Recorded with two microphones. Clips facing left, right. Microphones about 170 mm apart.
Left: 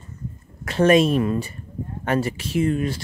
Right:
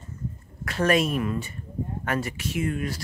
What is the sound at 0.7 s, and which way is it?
Speech, 25° left (ahead or behind).